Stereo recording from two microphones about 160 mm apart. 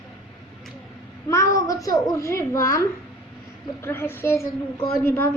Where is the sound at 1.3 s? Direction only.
20° left (ahead or behind).